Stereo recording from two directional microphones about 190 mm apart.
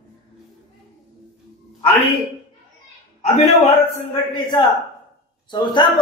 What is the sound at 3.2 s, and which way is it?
Speech, 35° left (ahead or behind).